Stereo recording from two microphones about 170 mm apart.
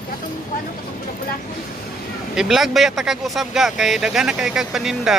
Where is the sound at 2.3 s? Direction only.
Centre (ahead or behind).